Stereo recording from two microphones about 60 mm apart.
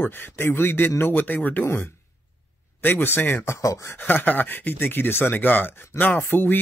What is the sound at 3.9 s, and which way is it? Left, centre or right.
Speech, left.